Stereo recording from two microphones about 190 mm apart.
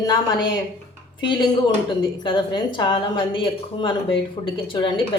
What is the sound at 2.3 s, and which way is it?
Speech, 25° left (ahead or behind).